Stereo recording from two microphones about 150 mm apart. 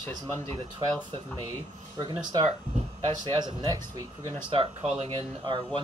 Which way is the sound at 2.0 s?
30° right (ahead or behind).